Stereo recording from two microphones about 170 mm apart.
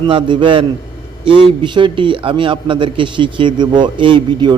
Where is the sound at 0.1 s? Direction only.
30° right (ahead or behind).